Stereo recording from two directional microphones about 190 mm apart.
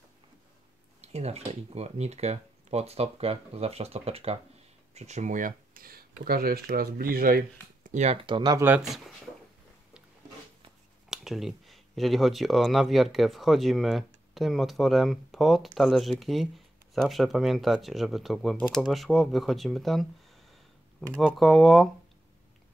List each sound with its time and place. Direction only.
1.0 s speech: 35° right (ahead or behind); by 7.4 s 50° right (ahead or behind)
7.8 s speech: 40° right (ahead or behind); by 8.6 s 20° right (ahead or behind)
8.6 s speech: 5° right (ahead or behind)
11.1 s speech: centre (ahead or behind)
21.2 s speech: centre (ahead or behind)